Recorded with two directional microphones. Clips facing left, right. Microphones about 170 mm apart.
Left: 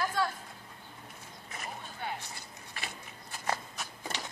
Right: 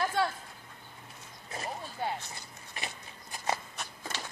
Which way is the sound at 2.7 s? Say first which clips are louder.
Right 2 dB; 20° right (ahead or behind).